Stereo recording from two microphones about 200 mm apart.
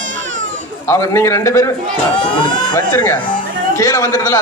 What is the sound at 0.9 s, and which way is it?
Speech, 15° left (ahead or behind).